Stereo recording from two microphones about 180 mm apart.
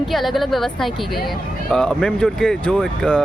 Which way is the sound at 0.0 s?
Centre (ahead or behind).